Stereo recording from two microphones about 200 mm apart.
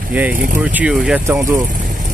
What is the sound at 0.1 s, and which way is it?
Speech, 10° right (ahead or behind).